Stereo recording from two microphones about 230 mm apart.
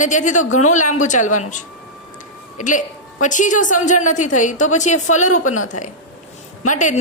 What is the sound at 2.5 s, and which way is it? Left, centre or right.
A woman's voice, left.